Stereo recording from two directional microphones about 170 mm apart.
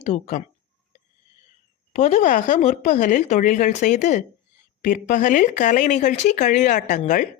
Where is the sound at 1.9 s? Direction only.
45° left (ahead or behind).